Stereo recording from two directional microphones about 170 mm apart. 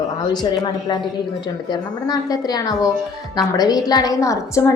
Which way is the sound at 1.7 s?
20° left (ahead or behind).